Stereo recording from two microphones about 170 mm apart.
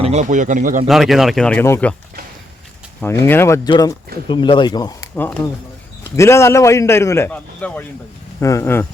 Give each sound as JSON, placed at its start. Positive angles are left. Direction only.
{"t": 0.0, "sound": "a man's voice", "side_deg": -40}
{"t": 0.9, "sound": "speech", "side_deg": 0}
{"t": 3.0, "sound": "a man's voice", "side_deg": 15}
{"t": 5.1, "sound": "a man's voice", "side_deg": 10}